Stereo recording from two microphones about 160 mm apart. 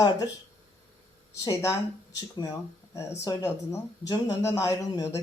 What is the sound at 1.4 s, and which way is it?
Speech, 20° left (ahead or behind).